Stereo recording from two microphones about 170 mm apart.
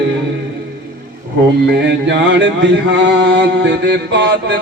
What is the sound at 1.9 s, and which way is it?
Mantra, 90° right.